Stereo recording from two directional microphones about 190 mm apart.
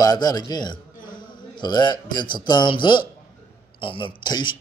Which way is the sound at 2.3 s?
25° left (ahead or behind).